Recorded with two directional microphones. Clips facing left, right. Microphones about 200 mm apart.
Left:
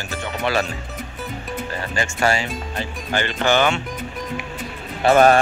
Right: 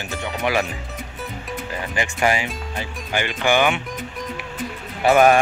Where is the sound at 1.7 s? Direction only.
15° right (ahead or behind).